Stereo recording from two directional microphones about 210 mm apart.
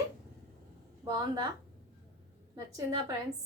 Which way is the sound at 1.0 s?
20° right (ahead or behind).